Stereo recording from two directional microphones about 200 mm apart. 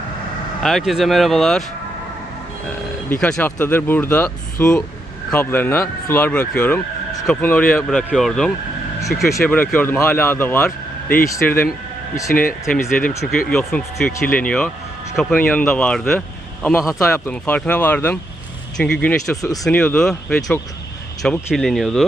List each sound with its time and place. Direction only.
0.6 s speech: centre (ahead or behind)
3.1 s speech: 5° left (ahead or behind)
9.0 s vehicle: centre (ahead or behind)
9.3 s speech: 10° left (ahead or behind)
12.3 s speech: 45° left (ahead or behind)
13.1 s speech: 5° left (ahead or behind)